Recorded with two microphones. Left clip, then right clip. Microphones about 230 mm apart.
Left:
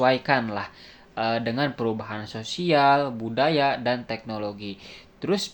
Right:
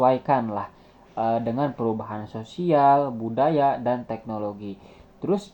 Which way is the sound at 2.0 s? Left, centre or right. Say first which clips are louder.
Left 2 dB; centre.